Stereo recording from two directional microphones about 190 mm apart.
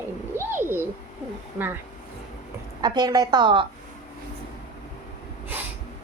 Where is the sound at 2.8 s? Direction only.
20° right (ahead or behind).